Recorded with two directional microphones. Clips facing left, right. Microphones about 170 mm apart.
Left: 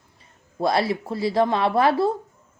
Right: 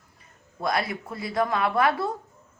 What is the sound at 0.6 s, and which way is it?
A woman's voice, 30° left (ahead or behind).